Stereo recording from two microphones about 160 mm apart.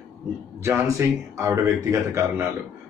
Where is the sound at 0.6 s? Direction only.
15° right (ahead or behind).